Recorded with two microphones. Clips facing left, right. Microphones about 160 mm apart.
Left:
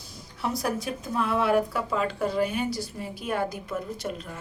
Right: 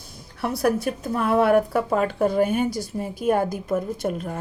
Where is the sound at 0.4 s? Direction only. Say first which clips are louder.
Right 6 dB; 60° right (ahead or behind).